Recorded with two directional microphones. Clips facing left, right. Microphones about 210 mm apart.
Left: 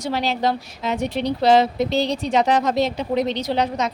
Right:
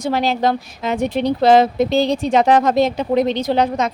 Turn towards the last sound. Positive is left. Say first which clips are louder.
# right 4 dB
turn(degrees=-50)  # may be behind; listen again after turning